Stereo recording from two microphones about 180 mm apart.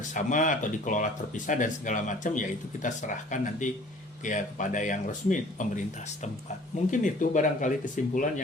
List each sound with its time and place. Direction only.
0.0 s speech: 45° left (ahead or behind)
6.9 s speech: 45° left (ahead or behind)